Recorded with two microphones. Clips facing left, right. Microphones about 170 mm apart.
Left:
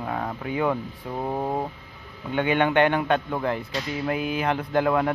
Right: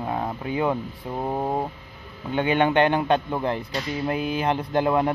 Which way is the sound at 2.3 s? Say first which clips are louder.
Right 1 dB; 30° right (ahead or behind).